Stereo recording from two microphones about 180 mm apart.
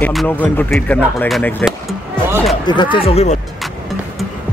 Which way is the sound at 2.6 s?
25° left (ahead or behind).